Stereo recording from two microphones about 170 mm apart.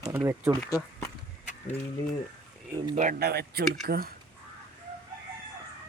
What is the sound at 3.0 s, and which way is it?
Speech, 55° right (ahead or behind).